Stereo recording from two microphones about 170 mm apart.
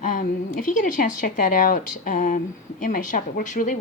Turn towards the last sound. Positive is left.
turn(degrees=50)  # may be behind; listen again after turning